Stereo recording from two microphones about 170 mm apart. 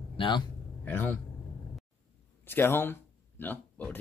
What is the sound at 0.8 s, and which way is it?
Speech, 10° left (ahead or behind).